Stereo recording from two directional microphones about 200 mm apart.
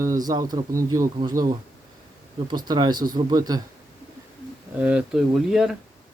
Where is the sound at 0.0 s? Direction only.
20° right (ahead or behind).